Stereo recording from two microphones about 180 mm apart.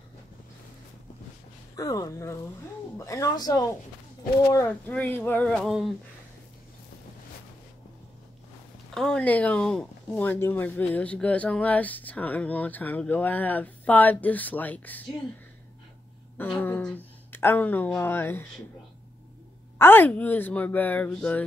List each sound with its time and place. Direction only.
1.8 s speech: 20° left (ahead or behind); by 5.9 s centre (ahead or behind)
8.9 s speech: 5° left (ahead or behind)
16.3 s speech: 10° left (ahead or behind)
19.8 s speech: 10° left (ahead or behind)